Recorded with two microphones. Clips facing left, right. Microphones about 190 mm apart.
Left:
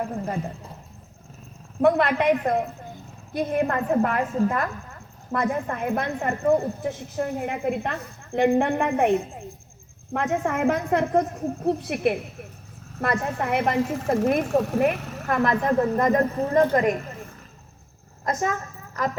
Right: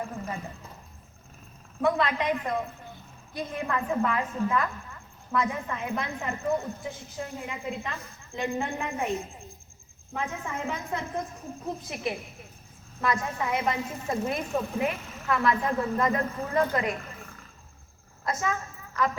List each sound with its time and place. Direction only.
1.8 s a woman's voice: 60° left (ahead or behind); by 14.3 s 90° left
14.4 s a woman's voice: 75° left (ahead or behind)
14.8 s speech: 65° left (ahead or behind)
15.3 s a woman's voice: 50° left (ahead or behind)
18.3 s a woman's voice: 45° left (ahead or behind)